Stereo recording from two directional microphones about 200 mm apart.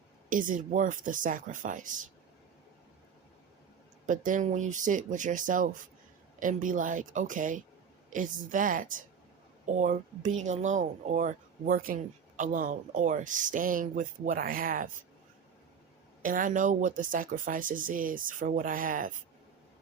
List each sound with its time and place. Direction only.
0.3 s speech: 40° right (ahead or behind)
4.0 s speech: 40° right (ahead or behind)
16.2 s speech: 40° right (ahead or behind)